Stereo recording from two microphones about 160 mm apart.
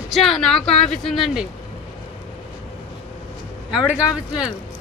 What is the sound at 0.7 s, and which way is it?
Speech, 45° left (ahead or behind).